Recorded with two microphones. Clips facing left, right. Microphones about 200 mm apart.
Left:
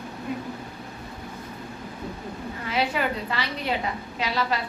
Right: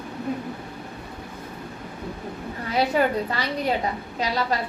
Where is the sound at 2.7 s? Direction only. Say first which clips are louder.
Right 5 dB; 40° right (ahead or behind).